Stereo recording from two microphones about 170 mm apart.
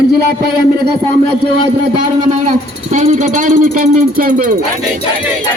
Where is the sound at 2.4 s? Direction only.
45° right (ahead or behind).